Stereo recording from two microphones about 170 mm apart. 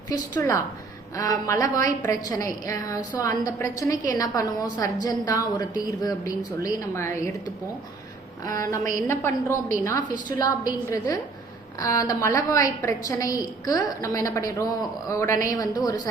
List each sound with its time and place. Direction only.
0.3 s a woman's voice: 20° left (ahead or behind)
8.4 s a woman's voice: 20° left (ahead or behind)